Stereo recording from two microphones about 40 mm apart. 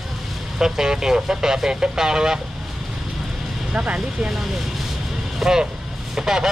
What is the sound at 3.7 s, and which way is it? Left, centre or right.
Speech, right.